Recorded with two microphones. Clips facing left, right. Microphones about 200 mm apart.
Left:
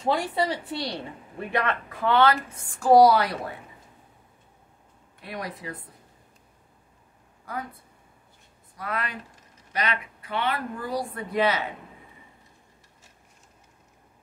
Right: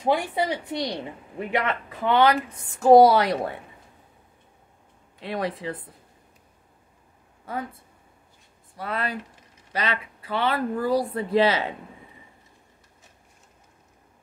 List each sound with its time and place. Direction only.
0.0 s a woman's voice: 15° right (ahead or behind)
5.2 s a woman's voice: 30° right (ahead or behind)
7.5 s speech: 25° right (ahead or behind)
8.7 s a woman's voice: 30° right (ahead or behind)